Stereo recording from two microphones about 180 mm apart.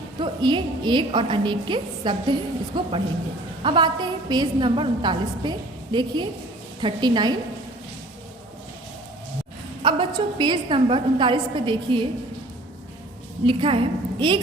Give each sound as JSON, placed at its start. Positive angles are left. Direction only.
{"t": 0.2, "sound": "a woman's voice", "side_deg": -25}
{"t": 9.8, "sound": "a woman's voice", "side_deg": -25}
{"t": 13.4, "sound": "a woman's voice", "side_deg": -30}